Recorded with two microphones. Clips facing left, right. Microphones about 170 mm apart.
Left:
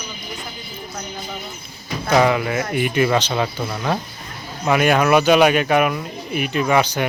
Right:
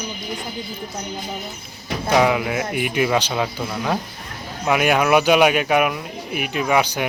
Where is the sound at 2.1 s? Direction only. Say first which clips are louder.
Left 1 dB; 5° right (ahead or behind).